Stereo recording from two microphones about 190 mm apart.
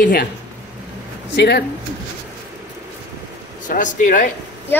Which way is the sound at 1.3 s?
65° left (ahead or behind).